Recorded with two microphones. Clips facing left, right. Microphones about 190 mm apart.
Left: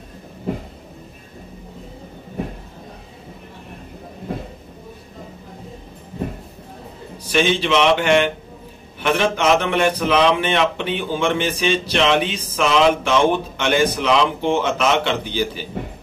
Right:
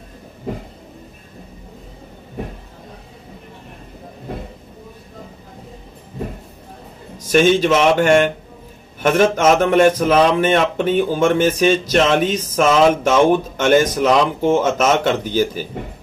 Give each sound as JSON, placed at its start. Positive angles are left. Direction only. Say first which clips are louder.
{"t": 7.2, "sound": "a man's voice", "louder": "right 5 dB", "side_deg": -45}